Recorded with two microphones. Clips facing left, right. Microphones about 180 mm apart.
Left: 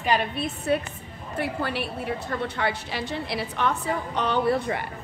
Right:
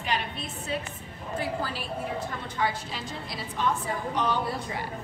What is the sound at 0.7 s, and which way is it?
A woman's voice, 60° left (ahead or behind).